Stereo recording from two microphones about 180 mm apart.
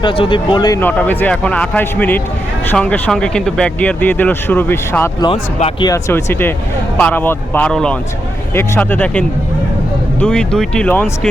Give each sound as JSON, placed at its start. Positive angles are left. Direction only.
{"t": 0.0, "sound": "speech", "side_deg": 30}
{"t": 5.3, "sound": "speech", "side_deg": 30}
{"t": 5.9, "sound": "speech", "side_deg": 15}